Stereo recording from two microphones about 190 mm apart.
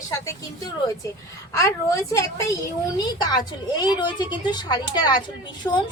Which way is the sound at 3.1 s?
20° left (ahead or behind).